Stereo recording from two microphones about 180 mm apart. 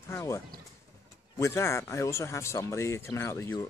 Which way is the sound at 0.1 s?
15° left (ahead or behind).